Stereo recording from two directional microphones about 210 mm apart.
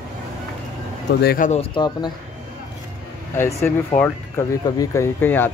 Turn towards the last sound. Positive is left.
turn(degrees=10)  # may be behind; listen again after turning